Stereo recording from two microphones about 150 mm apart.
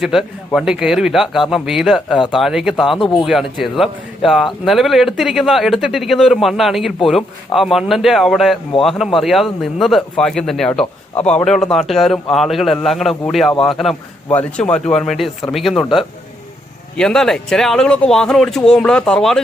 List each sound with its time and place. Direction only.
0.0 s a man's voice: centre (ahead or behind)
3.0 s speech: 35° left (ahead or behind)
3.2 s a man's voice: centre (ahead or behind)
17.0 s a man's voice: 5° left (ahead or behind)